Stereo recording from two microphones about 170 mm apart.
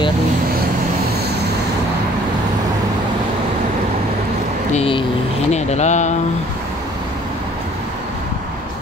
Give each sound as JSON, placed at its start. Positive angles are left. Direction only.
{"t": 4.7, "sound": "vehicle", "side_deg": 30}
{"t": 5.5, "sound": "speech", "side_deg": 40}